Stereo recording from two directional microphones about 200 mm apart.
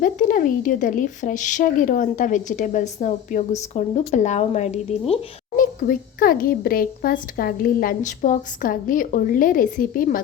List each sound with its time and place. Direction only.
0.0 s speech: 40° left (ahead or behind)
5.5 s a child's voice: 45° left (ahead or behind)